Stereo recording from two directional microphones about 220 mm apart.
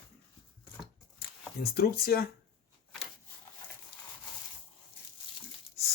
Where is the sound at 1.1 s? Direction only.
45° left (ahead or behind).